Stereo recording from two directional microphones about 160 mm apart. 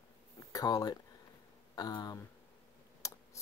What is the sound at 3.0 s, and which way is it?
Computer keyboard, 20° left (ahead or behind).